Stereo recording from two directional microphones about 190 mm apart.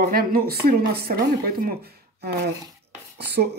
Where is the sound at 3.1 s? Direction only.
60° right (ahead or behind).